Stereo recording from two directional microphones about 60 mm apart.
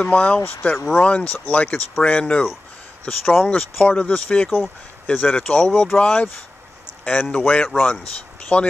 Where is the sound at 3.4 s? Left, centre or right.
Centre.